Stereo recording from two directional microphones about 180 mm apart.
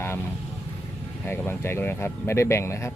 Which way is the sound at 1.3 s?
10° left (ahead or behind).